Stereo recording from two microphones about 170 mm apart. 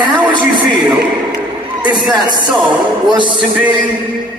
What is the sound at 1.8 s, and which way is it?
Speech, 25° right (ahead or behind).